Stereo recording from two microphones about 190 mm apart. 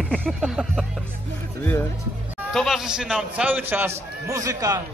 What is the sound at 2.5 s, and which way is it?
A man's voice, centre (ahead or behind).